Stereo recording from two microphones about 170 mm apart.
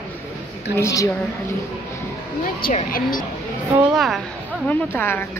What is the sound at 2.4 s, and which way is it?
Speech, 55° left (ahead or behind).